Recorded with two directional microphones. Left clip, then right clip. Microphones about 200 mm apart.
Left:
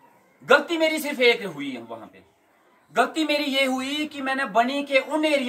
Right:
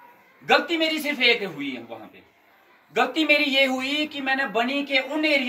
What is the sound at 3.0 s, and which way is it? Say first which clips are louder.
Speech: right 2 dB; 25° left (ahead or behind).